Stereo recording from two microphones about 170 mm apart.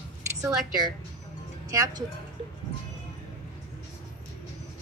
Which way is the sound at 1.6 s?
20° right (ahead or behind).